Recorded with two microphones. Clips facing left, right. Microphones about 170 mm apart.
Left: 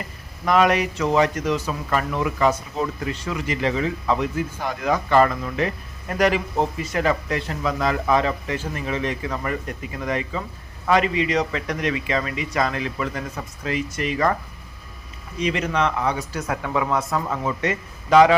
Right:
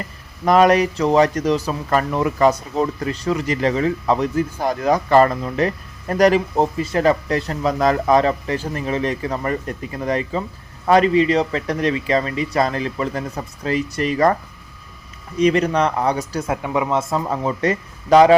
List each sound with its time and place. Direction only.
0.4 s speech: 40° right (ahead or behind)
15.4 s speech: 40° right (ahead or behind)
16.5 s a man's voice: 20° right (ahead or behind); by 18.3 s 35° right (ahead or behind)